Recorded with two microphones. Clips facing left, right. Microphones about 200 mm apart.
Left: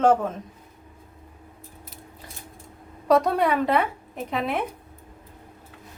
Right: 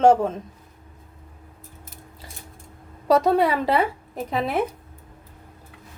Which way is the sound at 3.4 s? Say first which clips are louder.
Right 1 dB; 35° right (ahead or behind).